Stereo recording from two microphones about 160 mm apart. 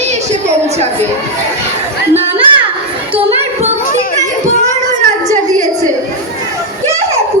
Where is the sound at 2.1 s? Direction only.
40° right (ahead or behind).